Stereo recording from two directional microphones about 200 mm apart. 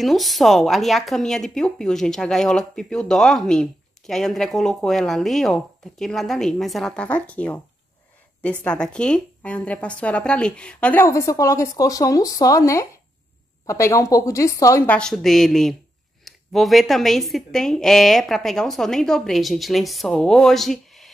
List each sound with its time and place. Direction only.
0.0 s a woman's voice: centre (ahead or behind)